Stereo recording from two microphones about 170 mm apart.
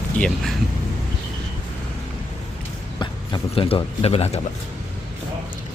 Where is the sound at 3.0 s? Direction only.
30° left (ahead or behind).